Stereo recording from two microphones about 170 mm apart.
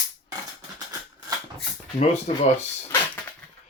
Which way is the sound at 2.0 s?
40° left (ahead or behind).